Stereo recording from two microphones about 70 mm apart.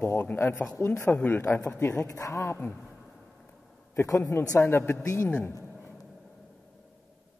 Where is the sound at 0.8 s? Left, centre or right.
Left.